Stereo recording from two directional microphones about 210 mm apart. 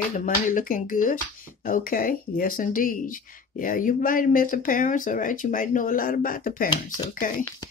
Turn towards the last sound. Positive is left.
turn(degrees=40)  # may be behind; listen again after turning